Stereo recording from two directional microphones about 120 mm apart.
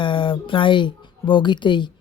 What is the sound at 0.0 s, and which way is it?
Speech, 45° left (ahead or behind).